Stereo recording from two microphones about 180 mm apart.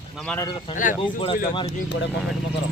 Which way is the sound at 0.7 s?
45° left (ahead or behind).